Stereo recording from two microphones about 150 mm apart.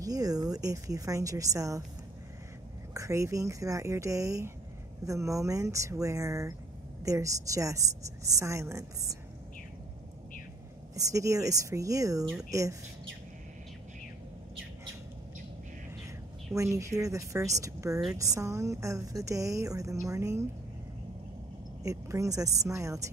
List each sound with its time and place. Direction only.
0.0 s a woman's voice: 25° right (ahead or behind)
2.9 s a woman's voice: 20° right (ahead or behind)
11.0 s a woman's voice: 20° right (ahead or behind)
16.5 s a woman's voice: 20° right (ahead or behind)
21.8 s a woman's voice: 20° right (ahead or behind)